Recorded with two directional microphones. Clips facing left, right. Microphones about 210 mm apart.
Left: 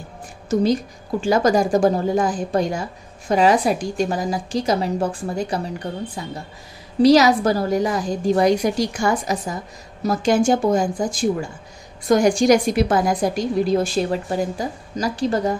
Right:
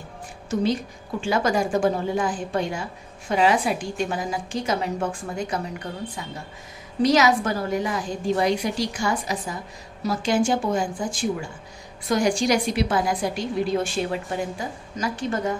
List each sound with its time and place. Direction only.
1.2 s a woman's voice: 40° left (ahead or behind)